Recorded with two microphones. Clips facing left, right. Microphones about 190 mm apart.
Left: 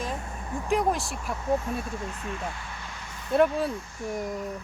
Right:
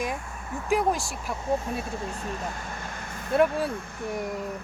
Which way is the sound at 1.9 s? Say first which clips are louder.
Right 2 dB; 35° right (ahead or behind).